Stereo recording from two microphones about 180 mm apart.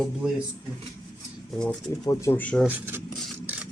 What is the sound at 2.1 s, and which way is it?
Speech, 15° left (ahead or behind).